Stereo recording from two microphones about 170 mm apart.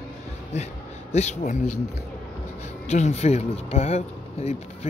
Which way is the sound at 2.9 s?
40° left (ahead or behind).